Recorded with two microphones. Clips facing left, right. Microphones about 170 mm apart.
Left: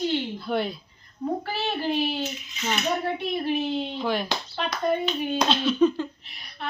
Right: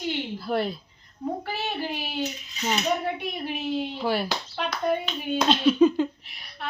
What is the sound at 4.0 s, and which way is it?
Speech, 5° right (ahead or behind).